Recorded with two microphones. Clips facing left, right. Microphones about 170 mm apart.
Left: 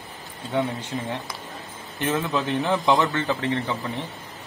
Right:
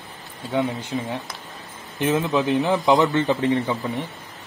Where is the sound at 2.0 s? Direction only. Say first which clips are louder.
Right 4 dB; 15° right (ahead or behind).